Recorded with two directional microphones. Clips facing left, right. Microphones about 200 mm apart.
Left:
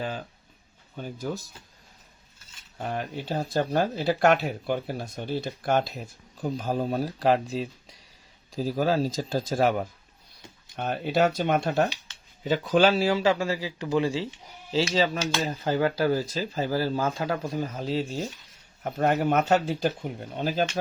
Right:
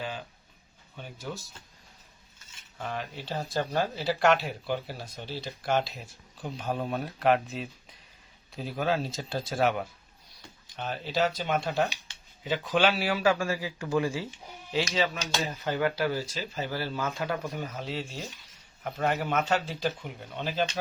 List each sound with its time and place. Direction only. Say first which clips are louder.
0.0 s speech: left 4 dB; 40° left (ahead or behind)
2.7 s speech: left 4 dB; 45° left (ahead or behind)
10.8 s a man's voice: left 5 dB; 55° left (ahead or behind); by 14.3 s 20° left (ahead or behind)
14.7 s speech: left 4 dB; 30° left (ahead or behind)